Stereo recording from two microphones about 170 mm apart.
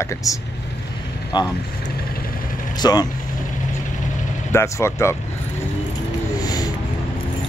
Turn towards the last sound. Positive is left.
turn(degrees=25)  # may be behind; listen again after turning